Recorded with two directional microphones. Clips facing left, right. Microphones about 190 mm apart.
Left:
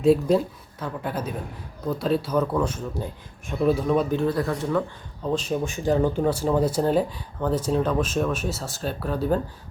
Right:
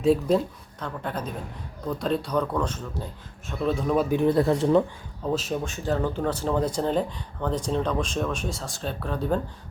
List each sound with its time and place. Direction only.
0.0 s speech: centre (ahead or behind)
4.1 s speech: 20° right (ahead or behind)
5.2 s speech: 5° right (ahead or behind)
5.6 s speech: 15° left (ahead or behind)